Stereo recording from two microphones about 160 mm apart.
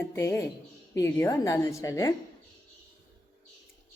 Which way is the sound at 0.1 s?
15° left (ahead or behind).